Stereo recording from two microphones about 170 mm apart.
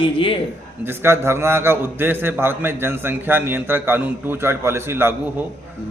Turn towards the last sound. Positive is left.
turn(degrees=-15)  # may be behind; listen again after turning